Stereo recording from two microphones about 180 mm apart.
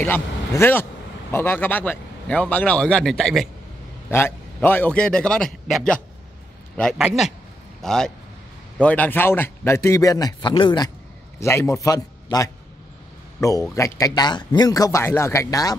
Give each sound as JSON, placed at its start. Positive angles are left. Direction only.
{"t": 0.0, "sound": "a man's voice", "side_deg": 10}
{"t": 4.1, "sound": "a man's voice", "side_deg": 10}